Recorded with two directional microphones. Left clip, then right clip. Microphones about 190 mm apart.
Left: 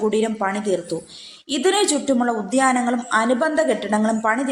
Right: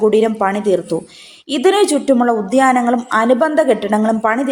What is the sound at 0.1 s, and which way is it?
A woman's voice, 15° right (ahead or behind).